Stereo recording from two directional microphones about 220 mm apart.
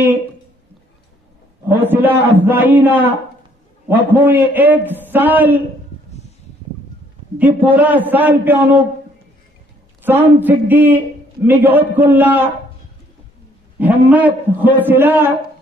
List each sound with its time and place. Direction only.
1.8 s a man's voice: 10° right (ahead or behind)
7.3 s a man's voice: 5° right (ahead or behind)
10.0 s a man's voice: 10° right (ahead or behind)
13.7 s a man's voice: 5° right (ahead or behind)